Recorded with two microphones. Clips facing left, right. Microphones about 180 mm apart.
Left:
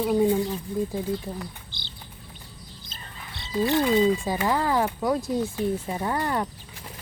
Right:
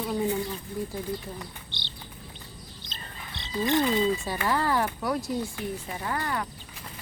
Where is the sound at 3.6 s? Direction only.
10° left (ahead or behind); by 6.5 s 25° left (ahead or behind).